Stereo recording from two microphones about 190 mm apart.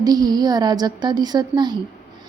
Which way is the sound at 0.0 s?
20° right (ahead or behind).